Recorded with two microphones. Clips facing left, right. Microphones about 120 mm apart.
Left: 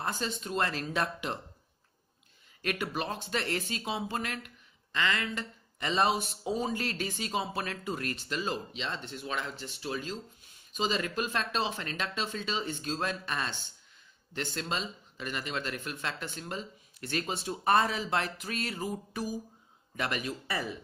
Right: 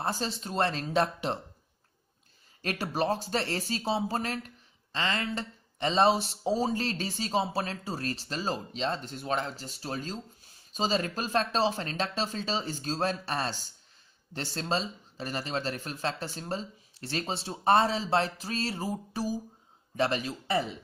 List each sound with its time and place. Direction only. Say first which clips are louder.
0.0 s speech: right 2 dB; 35° right (ahead or behind)
2.6 s speech: right 4 dB; 35° right (ahead or behind)